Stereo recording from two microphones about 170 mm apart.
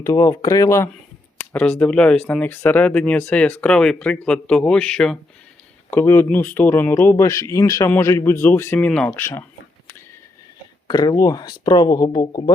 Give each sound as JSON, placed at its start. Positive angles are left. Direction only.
{"t": 0.0, "sound": "speech", "side_deg": 20}
{"t": 1.5, "sound": "speech", "side_deg": 5}
{"t": 10.8, "sound": "speech", "side_deg": 20}